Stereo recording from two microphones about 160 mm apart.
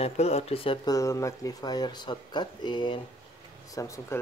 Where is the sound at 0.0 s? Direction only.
40° left (ahead or behind).